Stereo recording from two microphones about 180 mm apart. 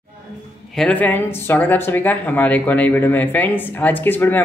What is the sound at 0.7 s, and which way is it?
Speech, 5° left (ahead or behind).